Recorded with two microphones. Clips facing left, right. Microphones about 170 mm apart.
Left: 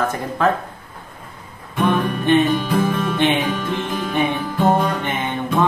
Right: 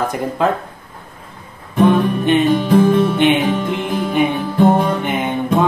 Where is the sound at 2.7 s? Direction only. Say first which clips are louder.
Right 7 dB; 20° right (ahead or behind).